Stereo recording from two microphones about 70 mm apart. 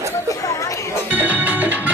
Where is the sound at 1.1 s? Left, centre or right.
Right.